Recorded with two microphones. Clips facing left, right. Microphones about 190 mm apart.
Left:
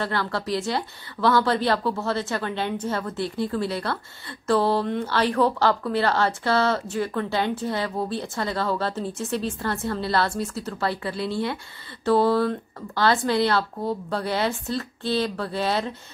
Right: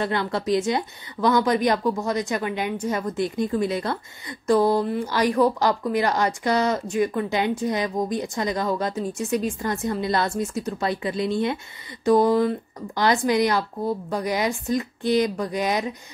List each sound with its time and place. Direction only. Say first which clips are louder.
0.0 s speech: right 2 dB; 20° right (ahead or behind)